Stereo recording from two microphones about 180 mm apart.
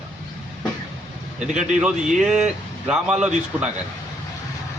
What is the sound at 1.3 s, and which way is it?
Speech, 40° right (ahead or behind).